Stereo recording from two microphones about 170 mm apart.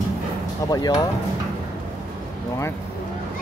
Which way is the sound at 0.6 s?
20° left (ahead or behind).